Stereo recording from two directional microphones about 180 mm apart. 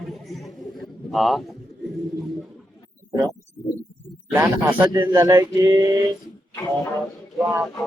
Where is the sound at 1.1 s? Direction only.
Centre (ahead or behind).